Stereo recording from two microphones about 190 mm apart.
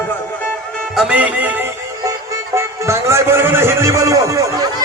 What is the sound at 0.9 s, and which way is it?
Music, 5° right (ahead or behind).